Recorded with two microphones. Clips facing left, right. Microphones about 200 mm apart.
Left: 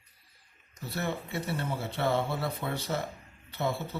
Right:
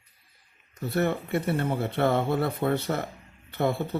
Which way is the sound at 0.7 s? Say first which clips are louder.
Right 8 dB; 55° right (ahead or behind).